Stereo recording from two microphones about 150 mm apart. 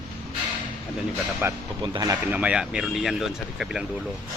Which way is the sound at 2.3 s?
10° right (ahead or behind).